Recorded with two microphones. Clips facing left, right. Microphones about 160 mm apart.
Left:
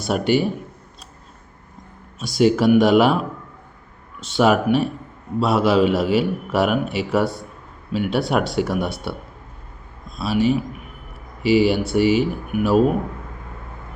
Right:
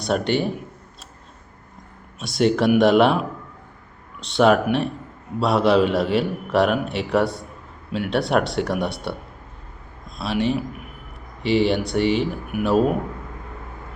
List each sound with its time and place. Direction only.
0.0 s a man's voice: 5° left (ahead or behind)
2.1 s a man's voice: centre (ahead or behind)
4.2 s a man's voice: centre (ahead or behind)
10.2 s a man's voice: centre (ahead or behind)